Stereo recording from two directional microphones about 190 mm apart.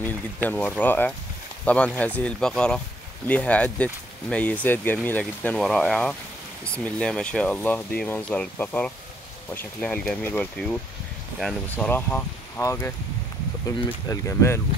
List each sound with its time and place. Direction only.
0.0 s speech: 10° left (ahead or behind)
14.0 s speech: 15° left (ahead or behind)